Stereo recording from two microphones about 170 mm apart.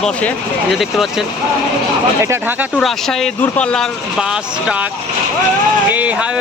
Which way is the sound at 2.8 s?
Centre (ahead or behind).